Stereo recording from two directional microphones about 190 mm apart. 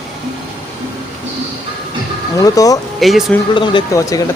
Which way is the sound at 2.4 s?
20° left (ahead or behind).